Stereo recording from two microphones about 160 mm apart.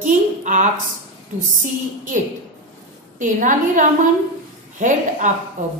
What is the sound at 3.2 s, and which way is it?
A woman's voice, 55° right (ahead or behind).